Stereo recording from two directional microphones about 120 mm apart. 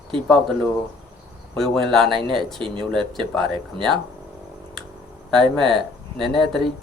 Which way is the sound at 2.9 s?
5° left (ahead or behind).